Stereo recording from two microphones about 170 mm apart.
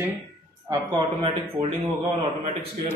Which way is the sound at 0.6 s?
30° right (ahead or behind).